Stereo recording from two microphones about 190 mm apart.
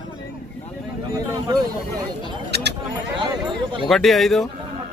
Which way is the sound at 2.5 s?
60° right (ahead or behind).